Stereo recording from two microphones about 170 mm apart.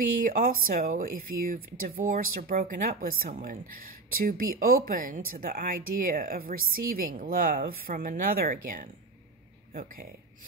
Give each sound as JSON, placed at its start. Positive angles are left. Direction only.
{"t": 0.2, "sound": "speech", "side_deg": -55}